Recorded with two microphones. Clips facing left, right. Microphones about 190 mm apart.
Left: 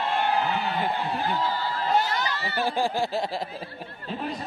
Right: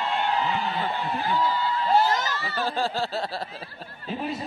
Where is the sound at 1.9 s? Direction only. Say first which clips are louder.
Right 3 dB; 45° right (ahead or behind).